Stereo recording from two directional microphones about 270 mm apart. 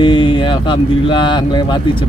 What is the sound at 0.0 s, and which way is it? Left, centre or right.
Speech, centre.